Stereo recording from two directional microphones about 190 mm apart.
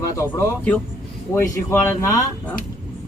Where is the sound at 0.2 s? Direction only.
10° left (ahead or behind).